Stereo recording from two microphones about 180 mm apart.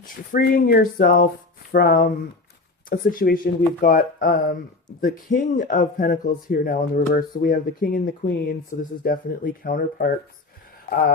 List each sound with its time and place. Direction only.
0.0 s speech: 55° left (ahead or behind)